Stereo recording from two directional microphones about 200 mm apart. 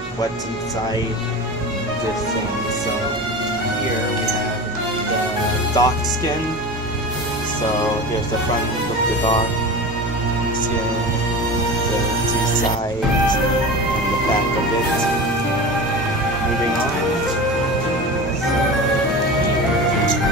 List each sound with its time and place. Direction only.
5.8 s speech: 15° left (ahead or behind)